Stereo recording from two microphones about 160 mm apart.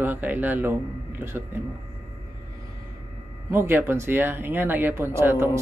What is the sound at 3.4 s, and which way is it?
Speech, 15° right (ahead or behind).